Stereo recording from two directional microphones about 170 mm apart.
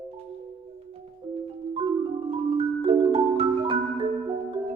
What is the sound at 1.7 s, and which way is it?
Music, 35° right (ahead or behind).